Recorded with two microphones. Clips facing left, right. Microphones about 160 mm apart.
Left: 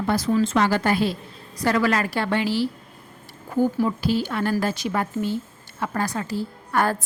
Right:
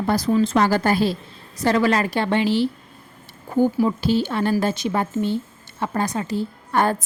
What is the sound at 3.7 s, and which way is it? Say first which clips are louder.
A woman's voice: right 3 dB; 20° right (ahead or behind).